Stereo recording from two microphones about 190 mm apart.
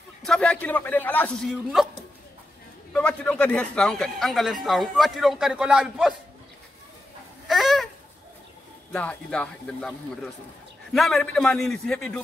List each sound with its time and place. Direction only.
0.2 s a man's voice: 5° left (ahead or behind)
2.9 s a man's voice: 5° left (ahead or behind)
7.4 s a sound: centre (ahead or behind)
8.9 s a man's voice: 5° left (ahead or behind)